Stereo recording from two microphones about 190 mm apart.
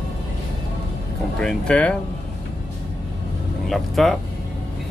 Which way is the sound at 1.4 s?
5° left (ahead or behind).